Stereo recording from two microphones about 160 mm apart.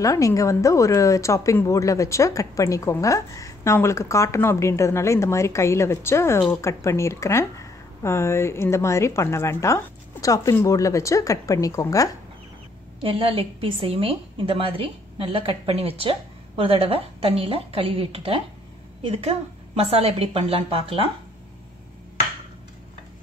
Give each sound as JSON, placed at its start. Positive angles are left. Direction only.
{"t": 0.0, "sound": "speech", "side_deg": 20}
{"t": 13.0, "sound": "a woman's voice", "side_deg": -35}